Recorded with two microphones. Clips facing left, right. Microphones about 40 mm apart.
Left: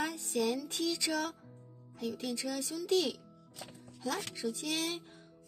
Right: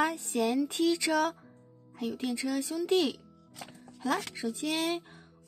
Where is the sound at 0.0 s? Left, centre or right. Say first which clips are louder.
Right 5 dB; right.